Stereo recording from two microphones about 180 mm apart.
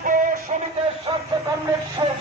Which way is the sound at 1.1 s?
30° right (ahead or behind).